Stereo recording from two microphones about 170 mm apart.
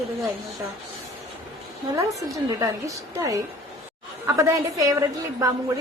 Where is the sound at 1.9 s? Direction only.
20° right (ahead or behind).